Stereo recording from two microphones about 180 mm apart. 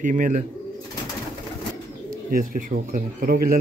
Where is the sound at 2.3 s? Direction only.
50° right (ahead or behind).